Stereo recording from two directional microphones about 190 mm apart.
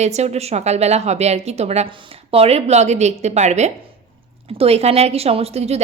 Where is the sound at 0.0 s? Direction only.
35° right (ahead or behind).